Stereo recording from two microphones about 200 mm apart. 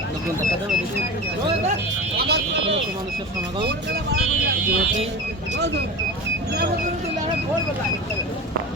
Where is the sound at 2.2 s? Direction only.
55° right (ahead or behind).